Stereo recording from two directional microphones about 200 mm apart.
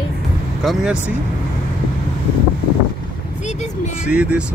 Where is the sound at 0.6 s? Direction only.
Centre (ahead or behind).